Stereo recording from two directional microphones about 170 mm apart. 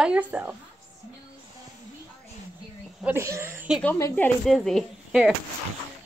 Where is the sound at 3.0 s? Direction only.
15° right (ahead or behind).